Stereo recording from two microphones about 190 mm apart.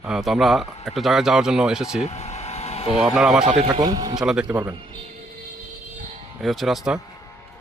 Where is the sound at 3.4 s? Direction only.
35° right (ahead or behind); by 4.2 s 20° right (ahead or behind).